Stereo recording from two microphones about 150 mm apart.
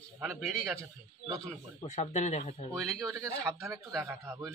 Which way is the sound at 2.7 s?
5° left (ahead or behind).